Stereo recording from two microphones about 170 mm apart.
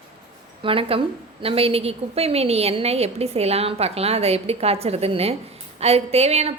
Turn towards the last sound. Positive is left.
turn(degrees=-40)  # may be behind; listen again after turning